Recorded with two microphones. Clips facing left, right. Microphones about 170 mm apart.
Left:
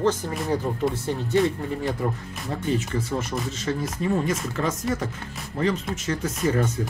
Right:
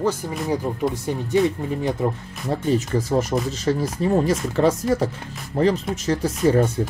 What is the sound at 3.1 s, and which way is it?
Speech, 40° right (ahead or behind).